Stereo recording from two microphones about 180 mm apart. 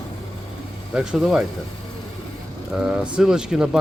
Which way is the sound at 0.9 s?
5° right (ahead or behind).